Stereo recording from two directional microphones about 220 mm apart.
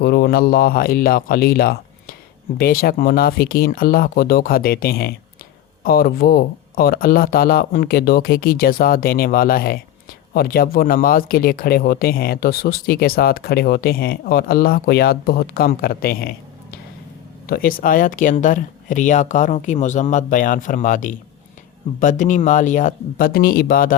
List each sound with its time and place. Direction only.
0.0 s speech: 45° left (ahead or behind)
17.4 s speech: 45° left (ahead or behind)